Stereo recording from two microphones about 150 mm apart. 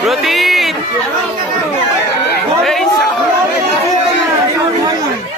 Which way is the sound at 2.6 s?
Centre (ahead or behind).